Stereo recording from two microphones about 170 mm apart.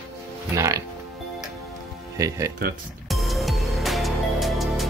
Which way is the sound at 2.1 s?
20° right (ahead or behind).